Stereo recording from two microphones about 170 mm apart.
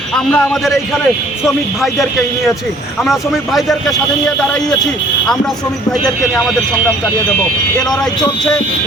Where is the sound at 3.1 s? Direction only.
Centre (ahead or behind).